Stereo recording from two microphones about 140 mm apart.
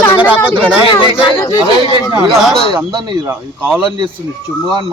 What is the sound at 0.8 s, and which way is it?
Speech, 35° left (ahead or behind).